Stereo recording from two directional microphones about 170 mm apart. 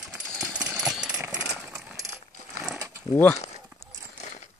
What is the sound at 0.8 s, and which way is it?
Jackhammer, centre (ahead or behind).